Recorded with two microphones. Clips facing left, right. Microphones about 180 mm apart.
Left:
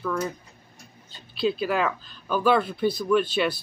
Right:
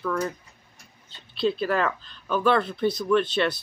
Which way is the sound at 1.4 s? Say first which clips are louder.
Even; 5° left (ahead or behind).